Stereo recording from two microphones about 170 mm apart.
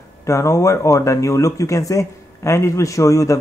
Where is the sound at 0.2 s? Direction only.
15° left (ahead or behind).